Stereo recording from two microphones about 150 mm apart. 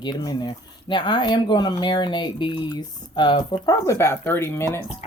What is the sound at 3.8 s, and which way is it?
Speech, 20° left (ahead or behind).